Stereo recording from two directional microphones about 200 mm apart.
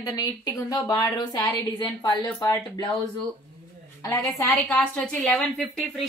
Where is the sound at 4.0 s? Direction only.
15° left (ahead or behind).